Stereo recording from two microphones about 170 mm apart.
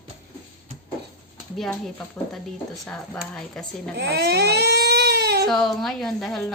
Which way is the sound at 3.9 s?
75° right (ahead or behind).